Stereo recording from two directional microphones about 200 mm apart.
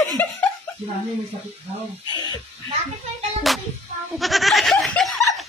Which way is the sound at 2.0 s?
20° left (ahead or behind).